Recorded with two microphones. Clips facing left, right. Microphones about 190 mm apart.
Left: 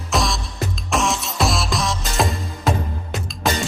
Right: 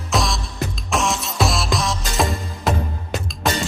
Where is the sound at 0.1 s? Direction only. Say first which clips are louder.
Even; centre (ahead or behind).